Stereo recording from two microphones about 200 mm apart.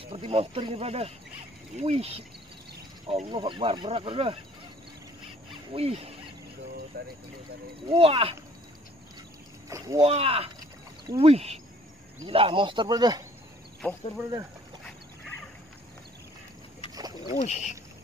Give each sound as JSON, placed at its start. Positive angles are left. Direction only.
{"t": 0.0, "sound": "speech", "side_deg": -25}
{"t": 5.7, "sound": "speech", "side_deg": -30}
{"t": 6.9, "sound": "speech", "side_deg": -50}
{"t": 7.9, "sound": "speech", "side_deg": -30}
{"t": 9.7, "sound": "speech", "side_deg": -15}
{"t": 10.0, "sound": "speech", "side_deg": -30}
{"t": 13.8, "sound": "speech", "side_deg": 5}
{"t": 17.3, "sound": "speech", "side_deg": 35}